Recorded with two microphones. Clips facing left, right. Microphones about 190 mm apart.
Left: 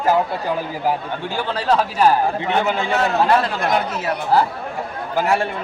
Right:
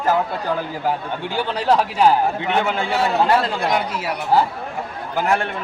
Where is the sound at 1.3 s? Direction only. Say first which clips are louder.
Right 1 dB; 15° right (ahead or behind).